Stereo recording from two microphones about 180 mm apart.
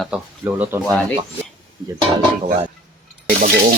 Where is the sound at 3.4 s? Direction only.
55° right (ahead or behind).